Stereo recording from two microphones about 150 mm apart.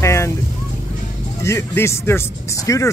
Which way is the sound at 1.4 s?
20° left (ahead or behind).